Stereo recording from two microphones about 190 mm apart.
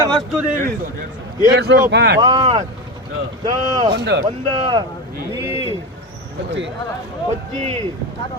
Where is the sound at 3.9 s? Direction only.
60° right (ahead or behind).